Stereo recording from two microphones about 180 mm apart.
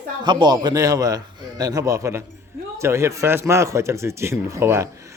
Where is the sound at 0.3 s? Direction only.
25° right (ahead or behind).